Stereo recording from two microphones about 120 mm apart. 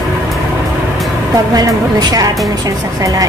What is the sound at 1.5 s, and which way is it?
Speech, 30° right (ahead or behind).